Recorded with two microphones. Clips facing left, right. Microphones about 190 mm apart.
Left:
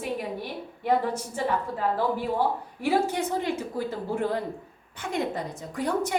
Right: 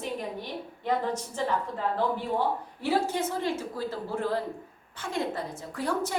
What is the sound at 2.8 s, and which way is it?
A woman's voice, 15° left (ahead or behind).